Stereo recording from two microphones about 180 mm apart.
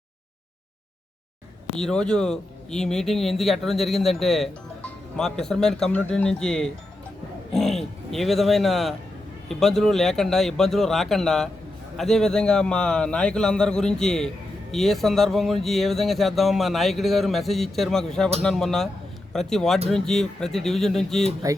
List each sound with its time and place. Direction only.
1.6 s speech: 5° left (ahead or behind)